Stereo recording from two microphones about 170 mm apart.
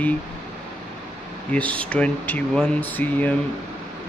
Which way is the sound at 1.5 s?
10° left (ahead or behind).